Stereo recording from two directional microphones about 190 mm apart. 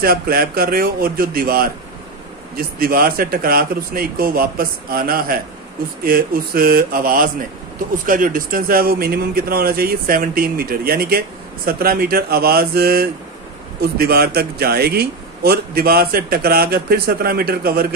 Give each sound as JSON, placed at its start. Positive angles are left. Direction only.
{"t": 0.0, "sound": "a man's voice", "side_deg": -50}